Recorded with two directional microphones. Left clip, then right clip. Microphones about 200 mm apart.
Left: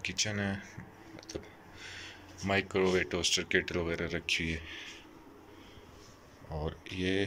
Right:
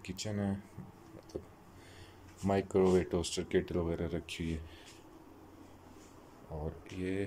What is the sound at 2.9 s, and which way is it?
Speech, 20° right (ahead or behind).